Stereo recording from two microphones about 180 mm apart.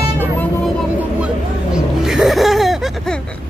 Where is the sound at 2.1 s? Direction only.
Centre (ahead or behind).